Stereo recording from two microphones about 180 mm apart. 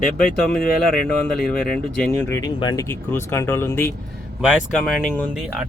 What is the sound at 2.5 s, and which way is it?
Speech, 20° left (ahead or behind).